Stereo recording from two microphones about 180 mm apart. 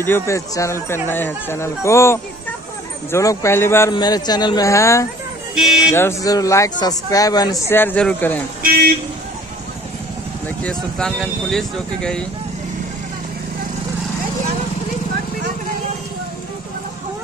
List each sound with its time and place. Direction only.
0.0 s speech: 15° left (ahead or behind)
5.5 s speech: 5° right (ahead or behind)
5.9 s speech: 15° left (ahead or behind)
10.6 s speech: 5° left (ahead or behind)